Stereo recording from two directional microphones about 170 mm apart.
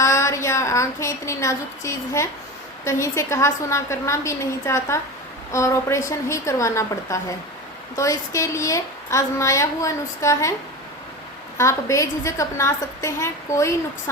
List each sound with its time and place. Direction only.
0.0 s a woman's voice: 15° left (ahead or behind)
11.5 s a woman's voice: 20° left (ahead or behind)